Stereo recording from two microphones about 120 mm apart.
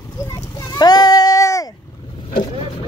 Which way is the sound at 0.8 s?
35° left (ahead or behind).